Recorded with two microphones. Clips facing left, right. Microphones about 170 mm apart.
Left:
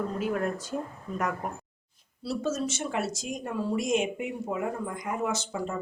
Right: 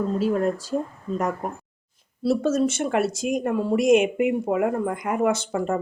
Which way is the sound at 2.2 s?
55° right (ahead or behind).